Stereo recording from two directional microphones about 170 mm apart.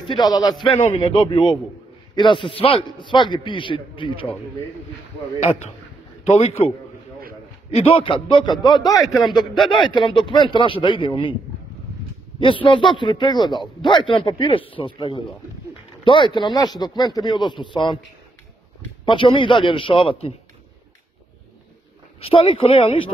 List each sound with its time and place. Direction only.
0.1 s a man's voice: 25° left (ahead or behind)
7.7 s a man's voice: 35° left (ahead or behind)
12.4 s a man's voice: 30° left (ahead or behind)
19.0 s a man's voice: 30° left (ahead or behind)
22.2 s a man's voice: 35° left (ahead or behind)